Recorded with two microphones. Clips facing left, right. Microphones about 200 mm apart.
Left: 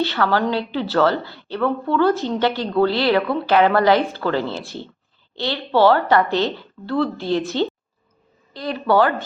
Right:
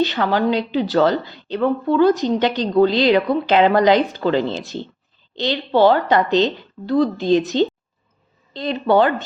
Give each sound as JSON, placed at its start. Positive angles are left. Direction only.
{"t": 0.0, "sound": "a woman's voice", "side_deg": -15}